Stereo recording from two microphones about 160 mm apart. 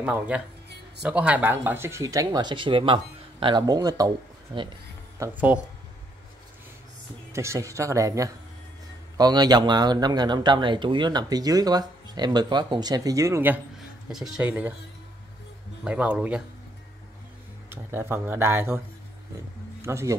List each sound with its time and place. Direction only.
0.0 s speech: 10° right (ahead or behind)
5.2 s speech: 20° right (ahead or behind)
7.3 s speech: 20° right (ahead or behind)
14.1 s speech: 5° right (ahead or behind)
15.8 s speech: 10° right (ahead or behind)
17.6 s speech: 15° right (ahead or behind)
19.8 s speech: 20° right (ahead or behind)